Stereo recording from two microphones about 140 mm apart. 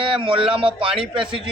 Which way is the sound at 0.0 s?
40° right (ahead or behind).